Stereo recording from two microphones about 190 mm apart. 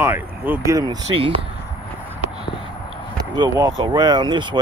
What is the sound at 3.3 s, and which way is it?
Speech, 20° right (ahead or behind).